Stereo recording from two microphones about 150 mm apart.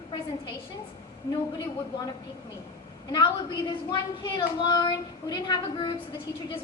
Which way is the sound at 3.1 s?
30° left (ahead or behind).